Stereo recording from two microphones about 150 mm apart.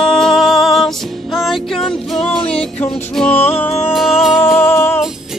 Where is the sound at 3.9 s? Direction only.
Centre (ahead or behind).